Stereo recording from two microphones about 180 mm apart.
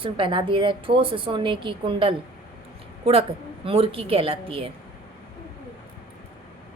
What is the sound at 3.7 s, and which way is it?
A woman's voice, 30° right (ahead or behind).